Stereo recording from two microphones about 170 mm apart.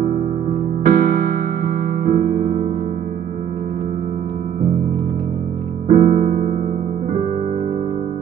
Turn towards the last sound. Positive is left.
turn(degrees=-45)  # may be behind; listen again after turning